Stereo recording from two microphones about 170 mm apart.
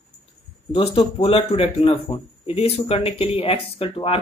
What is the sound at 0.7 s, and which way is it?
Speech, 35° left (ahead or behind).